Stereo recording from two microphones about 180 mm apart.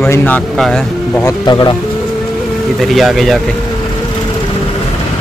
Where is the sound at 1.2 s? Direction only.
20° left (ahead or behind).